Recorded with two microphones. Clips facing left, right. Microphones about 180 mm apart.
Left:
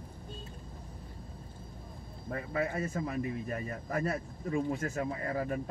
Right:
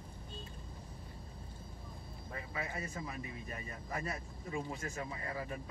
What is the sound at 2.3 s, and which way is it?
A man's voice, 50° left (ahead or behind).